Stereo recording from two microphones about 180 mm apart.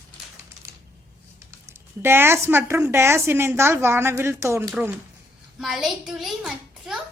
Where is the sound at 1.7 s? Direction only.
15° right (ahead or behind).